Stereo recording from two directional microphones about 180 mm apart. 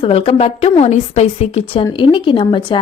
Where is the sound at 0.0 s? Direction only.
30° left (ahead or behind).